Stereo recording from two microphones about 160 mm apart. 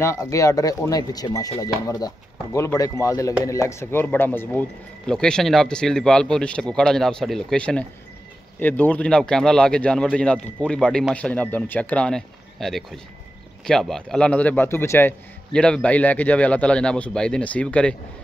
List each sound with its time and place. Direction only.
0.0 s a man's voice: 20° left (ahead or behind)